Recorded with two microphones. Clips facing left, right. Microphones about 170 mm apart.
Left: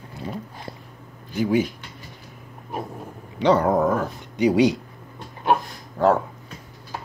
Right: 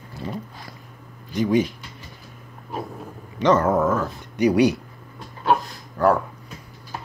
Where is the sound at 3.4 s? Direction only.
15° left (ahead or behind).